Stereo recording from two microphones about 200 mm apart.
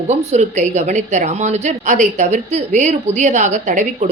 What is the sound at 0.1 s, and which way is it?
A woman's voice, 35° right (ahead or behind).